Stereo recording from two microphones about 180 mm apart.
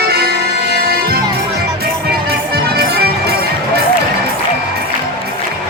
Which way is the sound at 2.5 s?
60° right (ahead or behind).